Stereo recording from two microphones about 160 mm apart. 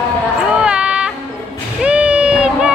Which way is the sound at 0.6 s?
5° right (ahead or behind).